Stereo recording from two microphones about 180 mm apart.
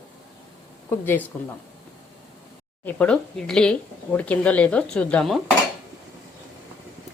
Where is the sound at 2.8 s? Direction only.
5° left (ahead or behind).